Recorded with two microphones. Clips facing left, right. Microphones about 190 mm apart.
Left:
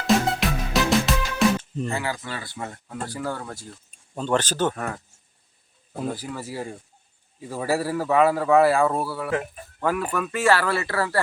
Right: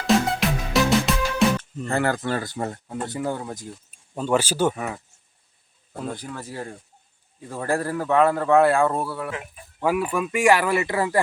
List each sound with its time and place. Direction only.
0.1 s music: centre (ahead or behind)
1.9 s speech: 55° right (ahead or behind); by 3.8 s 15° right (ahead or behind)
4.1 s speech: 5° right (ahead or behind)
5.9 s a man's voice: 5° left (ahead or behind)
9.8 s speech: 10° right (ahead or behind)